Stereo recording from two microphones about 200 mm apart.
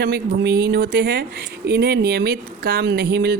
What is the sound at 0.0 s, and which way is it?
A woman's voice, 55° right (ahead or behind).